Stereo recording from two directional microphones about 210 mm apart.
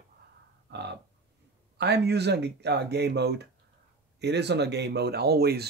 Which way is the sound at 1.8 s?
55° right (ahead or behind).